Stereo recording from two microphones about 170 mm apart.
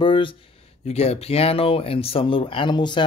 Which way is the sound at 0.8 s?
40° left (ahead or behind).